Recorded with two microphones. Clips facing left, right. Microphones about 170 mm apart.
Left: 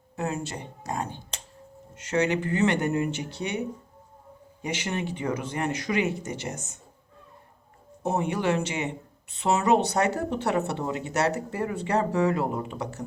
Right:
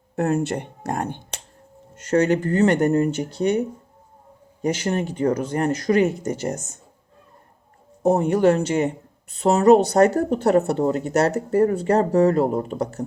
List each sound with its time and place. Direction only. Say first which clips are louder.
0.2 s speech: right 9 dB; 55° right (ahead or behind)
2.0 s speech: right 6 dB; 45° right (ahead or behind)
4.6 s speech: right 8 dB; 40° right (ahead or behind)
8.0 s speech: right 9 dB; 45° right (ahead or behind)